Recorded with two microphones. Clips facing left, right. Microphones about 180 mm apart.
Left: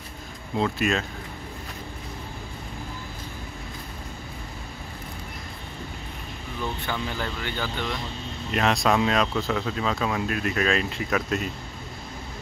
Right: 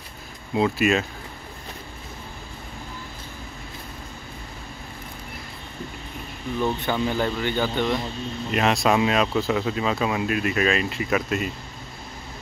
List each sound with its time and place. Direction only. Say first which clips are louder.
0.6 s speech: right 4 dB; 5° right (ahead or behind)
6.9 s speech: right 7 dB; 25° right (ahead or behind)
8.5 s speech: right 2 dB; 5° right (ahead or behind)